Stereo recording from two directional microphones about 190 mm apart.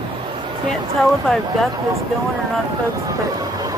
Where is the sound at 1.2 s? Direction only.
5° left (ahead or behind).